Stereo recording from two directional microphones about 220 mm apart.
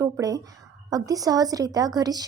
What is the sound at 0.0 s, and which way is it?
Speech, 15° right (ahead or behind).